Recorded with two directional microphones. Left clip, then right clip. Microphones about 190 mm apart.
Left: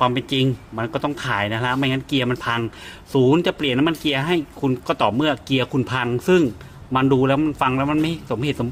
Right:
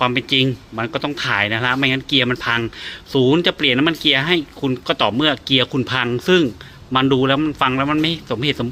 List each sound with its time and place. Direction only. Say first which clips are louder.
0.0 s speech: right 3 dB; 5° left (ahead or behind)